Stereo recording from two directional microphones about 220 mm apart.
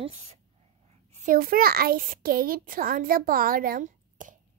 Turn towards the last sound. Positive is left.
turn(degrees=-35)  # may be behind; listen again after turning